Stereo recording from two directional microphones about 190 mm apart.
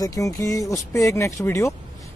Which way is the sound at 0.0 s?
15° left (ahead or behind).